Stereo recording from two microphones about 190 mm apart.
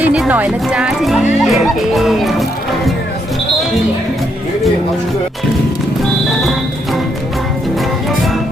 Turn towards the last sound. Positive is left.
turn(degrees=0)  # may be behind; listen again after turning